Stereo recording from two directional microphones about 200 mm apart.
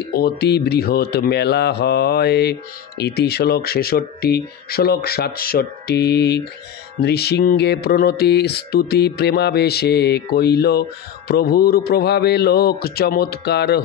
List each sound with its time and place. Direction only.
0.1 s speech: 50° left (ahead or behind)